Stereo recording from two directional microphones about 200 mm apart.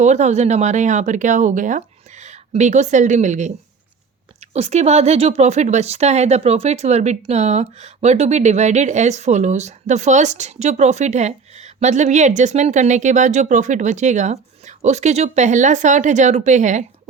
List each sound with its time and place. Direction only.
0.0 s a woman's voice: 35° right (ahead or behind)